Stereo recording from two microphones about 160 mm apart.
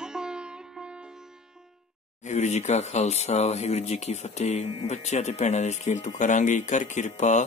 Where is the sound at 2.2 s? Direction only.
45° left (ahead or behind).